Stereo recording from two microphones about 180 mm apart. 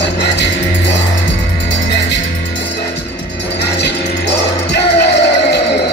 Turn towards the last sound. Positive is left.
turn(degrees=70)  # may be behind; listen again after turning